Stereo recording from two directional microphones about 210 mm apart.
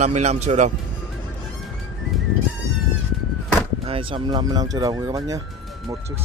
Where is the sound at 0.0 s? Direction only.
30° right (ahead or behind).